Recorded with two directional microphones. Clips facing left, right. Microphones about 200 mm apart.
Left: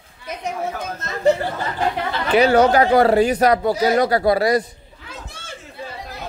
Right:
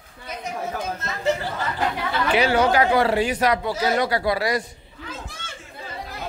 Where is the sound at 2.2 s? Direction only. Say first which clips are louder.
Left 6 dB; 40° left (ahead or behind).